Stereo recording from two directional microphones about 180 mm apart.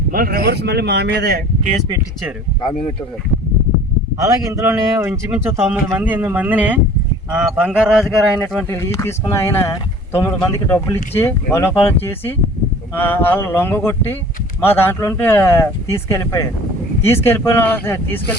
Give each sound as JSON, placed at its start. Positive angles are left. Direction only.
{"t": 0.1, "sound": "a man's voice", "side_deg": -55}
{"t": 4.2, "sound": "a man's voice", "side_deg": -15}
{"t": 8.4, "sound": "speech", "side_deg": 10}